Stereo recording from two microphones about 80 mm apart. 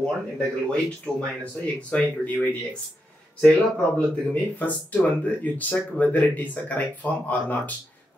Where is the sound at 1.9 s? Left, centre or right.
Centre.